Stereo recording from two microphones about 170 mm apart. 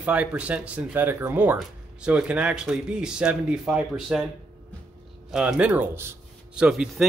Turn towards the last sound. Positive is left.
turn(degrees=-5)  # may be behind; listen again after turning